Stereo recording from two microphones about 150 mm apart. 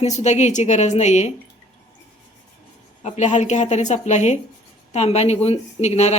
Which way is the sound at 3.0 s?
50° left (ahead or behind).